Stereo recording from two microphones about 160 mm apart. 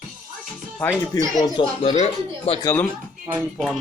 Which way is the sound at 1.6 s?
30° left (ahead or behind).